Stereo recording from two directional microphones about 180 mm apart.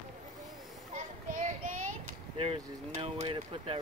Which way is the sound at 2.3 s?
30° right (ahead or behind).